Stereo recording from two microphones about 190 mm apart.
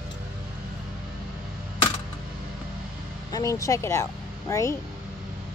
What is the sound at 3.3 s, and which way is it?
Speech, 15° left (ahead or behind).